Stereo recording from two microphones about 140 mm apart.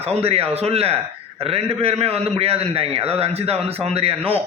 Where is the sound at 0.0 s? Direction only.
45° right (ahead or behind).